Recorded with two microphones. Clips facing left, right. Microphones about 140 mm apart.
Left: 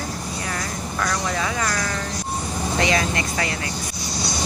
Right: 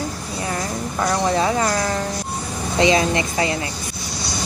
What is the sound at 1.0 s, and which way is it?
Speech, 30° right (ahead or behind).